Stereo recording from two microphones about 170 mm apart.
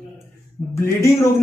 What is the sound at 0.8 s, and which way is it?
Speech, 15° left (ahead or behind).